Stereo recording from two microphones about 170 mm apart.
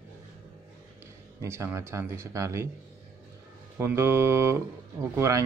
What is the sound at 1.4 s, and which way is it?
Speech, 15° right (ahead or behind).